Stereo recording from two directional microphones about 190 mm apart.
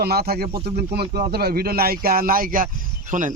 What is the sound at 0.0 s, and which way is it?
A man's voice, 55° right (ahead or behind).